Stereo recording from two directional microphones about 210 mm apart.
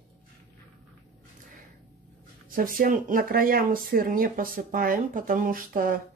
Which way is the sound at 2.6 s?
40° right (ahead or behind).